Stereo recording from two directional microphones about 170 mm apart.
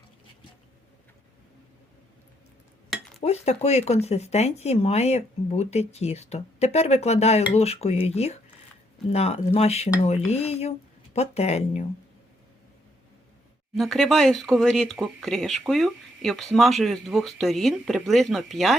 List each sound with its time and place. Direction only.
3.2 s speech: 40° left (ahead or behind)
13.7 s speech: centre (ahead or behind)